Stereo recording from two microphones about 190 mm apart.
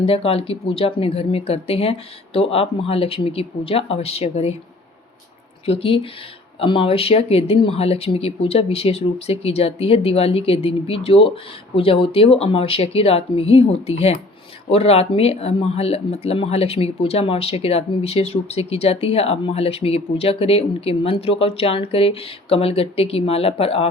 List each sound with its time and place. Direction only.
0.0 s speech: 30° left (ahead or behind)
5.6 s speech: 30° left (ahead or behind)